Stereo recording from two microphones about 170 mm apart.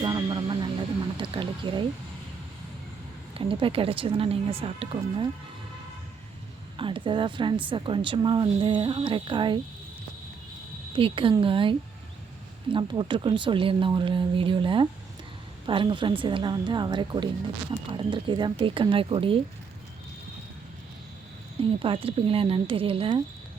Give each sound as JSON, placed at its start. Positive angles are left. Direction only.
{"t": 0.0, "sound": "vehicle", "side_deg": -25}
{"t": 1.1, "sound": "a sound", "side_deg": -30}
{"t": 3.3, "sound": "speech", "side_deg": -35}
{"t": 6.7, "sound": "speech", "side_deg": -30}
{"t": 10.9, "sound": "speech", "side_deg": -30}
{"t": 21.6, "sound": "speech", "side_deg": -30}